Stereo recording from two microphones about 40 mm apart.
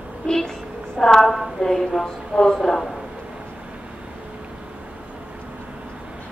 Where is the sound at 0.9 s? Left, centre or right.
Centre.